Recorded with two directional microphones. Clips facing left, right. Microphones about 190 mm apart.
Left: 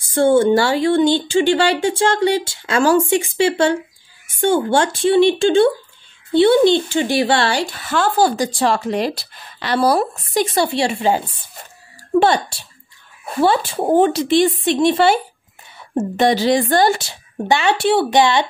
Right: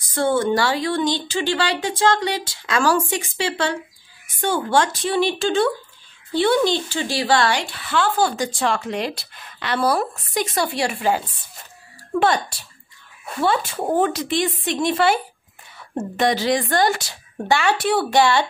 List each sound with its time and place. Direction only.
0.0 s speech: 30° left (ahead or behind)
7.6 s speech: 45° left (ahead or behind); by 18.5 s 20° left (ahead or behind)